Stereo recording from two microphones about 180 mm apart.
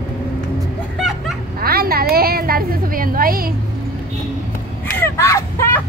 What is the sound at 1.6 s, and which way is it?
A woman's voice, 55° right (ahead or behind).